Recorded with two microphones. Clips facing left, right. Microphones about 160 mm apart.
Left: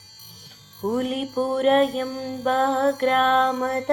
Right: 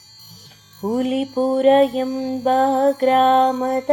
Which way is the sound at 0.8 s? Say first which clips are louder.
Right 3 dB; 30° right (ahead or behind).